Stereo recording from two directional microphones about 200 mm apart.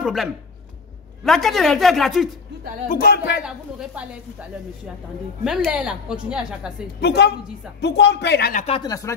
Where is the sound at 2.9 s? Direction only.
50° left (ahead or behind).